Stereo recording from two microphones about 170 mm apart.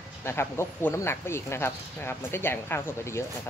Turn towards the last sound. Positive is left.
turn(degrees=15)  # may be behind; listen again after turning